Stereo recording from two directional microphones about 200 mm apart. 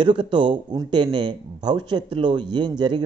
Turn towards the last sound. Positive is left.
turn(degrees=-20)  # may be behind; listen again after turning